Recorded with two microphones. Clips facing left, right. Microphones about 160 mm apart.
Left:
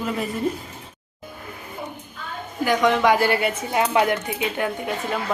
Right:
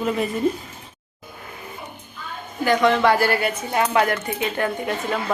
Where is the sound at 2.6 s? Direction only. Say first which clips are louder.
Right 1 dB; 10° left (ahead or behind).